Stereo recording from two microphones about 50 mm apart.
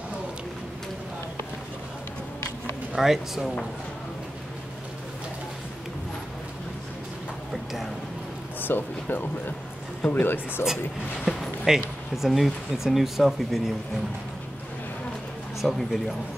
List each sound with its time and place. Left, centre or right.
2.9 s speech: centre
8.5 s speech: left
11.2 s speech: centre
15.6 s speech: centre